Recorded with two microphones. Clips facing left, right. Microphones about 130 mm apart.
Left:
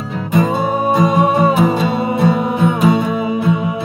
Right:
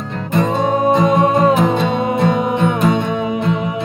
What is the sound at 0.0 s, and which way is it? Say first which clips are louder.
Music: left 2 dB; 5° left (ahead or behind).